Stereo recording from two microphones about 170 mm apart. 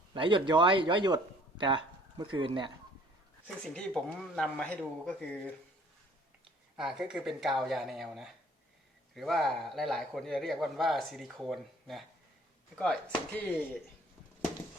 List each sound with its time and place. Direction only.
0.1 s a man's voice: 30° right (ahead or behind)
3.6 s speech: 5° left (ahead or behind)
6.7 s a man's voice: 5° right (ahead or behind)